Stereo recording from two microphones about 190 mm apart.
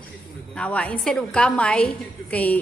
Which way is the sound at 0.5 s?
5° left (ahead or behind).